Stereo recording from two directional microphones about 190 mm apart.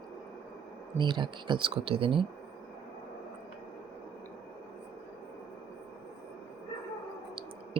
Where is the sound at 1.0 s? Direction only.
25° right (ahead or behind).